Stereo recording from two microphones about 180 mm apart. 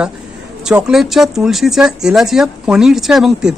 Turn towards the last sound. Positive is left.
turn(degrees=0)  # may be behind; listen again after turning